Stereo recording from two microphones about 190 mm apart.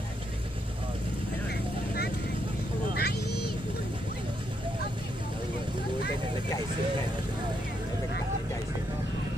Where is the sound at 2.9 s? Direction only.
60° left (ahead or behind).